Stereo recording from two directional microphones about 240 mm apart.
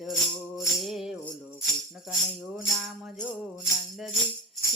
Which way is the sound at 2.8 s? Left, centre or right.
Centre.